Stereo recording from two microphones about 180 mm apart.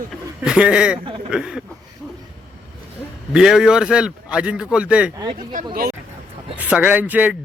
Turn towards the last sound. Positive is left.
turn(degrees=-10)  # may be behind; listen again after turning